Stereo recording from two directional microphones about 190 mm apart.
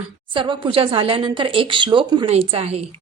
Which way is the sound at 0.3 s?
25° right (ahead or behind).